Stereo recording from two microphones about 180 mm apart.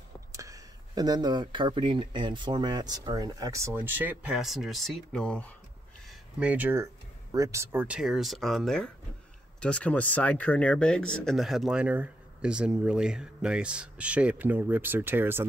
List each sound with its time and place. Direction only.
0.3 s speech: 20° right (ahead or behind); by 5.5 s 5° left (ahead or behind)
6.0 s a sound: 10° right (ahead or behind)
7.3 s speech: 15° right (ahead or behind)